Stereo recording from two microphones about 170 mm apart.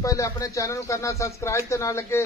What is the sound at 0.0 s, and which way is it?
Speech, 20° left (ahead or behind).